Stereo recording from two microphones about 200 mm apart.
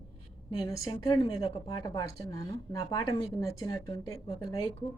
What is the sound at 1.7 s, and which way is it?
Speech, 15° left (ahead or behind).